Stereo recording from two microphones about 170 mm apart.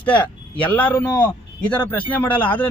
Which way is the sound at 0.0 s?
10° left (ahead or behind).